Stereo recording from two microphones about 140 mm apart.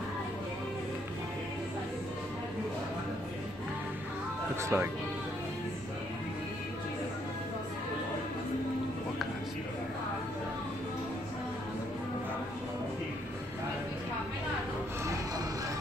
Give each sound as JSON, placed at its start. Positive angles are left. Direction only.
{"t": 4.6, "sound": "speech", "side_deg": -20}